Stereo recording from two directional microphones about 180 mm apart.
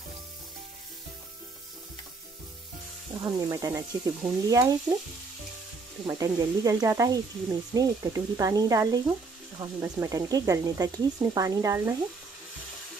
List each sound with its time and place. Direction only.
3.2 s speech: 20° right (ahead or behind)
6.0 s speech: 20° right (ahead or behind)